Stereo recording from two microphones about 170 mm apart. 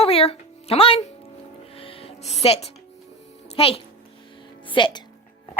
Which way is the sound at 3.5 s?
35° left (ahead or behind).